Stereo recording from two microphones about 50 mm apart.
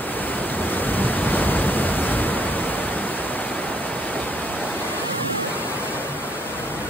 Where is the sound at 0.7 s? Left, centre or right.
Left.